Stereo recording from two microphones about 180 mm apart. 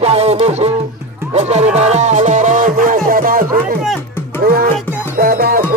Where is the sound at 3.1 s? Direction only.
50° right (ahead or behind).